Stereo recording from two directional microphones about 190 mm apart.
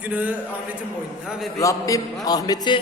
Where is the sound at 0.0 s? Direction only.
10° right (ahead or behind).